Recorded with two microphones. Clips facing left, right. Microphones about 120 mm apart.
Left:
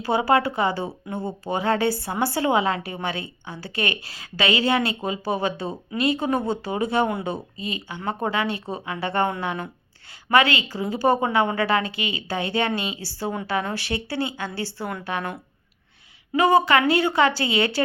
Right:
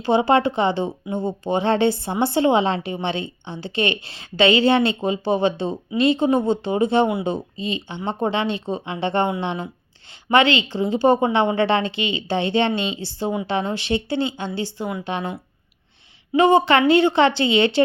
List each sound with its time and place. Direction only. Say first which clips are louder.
0.0 s a woman's voice: right 3 dB; 25° right (ahead or behind)
16.3 s a woman's voice: right 3 dB; 25° right (ahead or behind)